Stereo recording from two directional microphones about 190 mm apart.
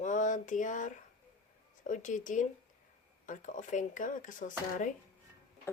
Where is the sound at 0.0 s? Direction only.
40° left (ahead or behind).